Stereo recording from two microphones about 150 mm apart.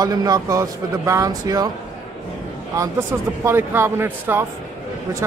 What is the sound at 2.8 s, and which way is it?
Speech, 15° right (ahead or behind).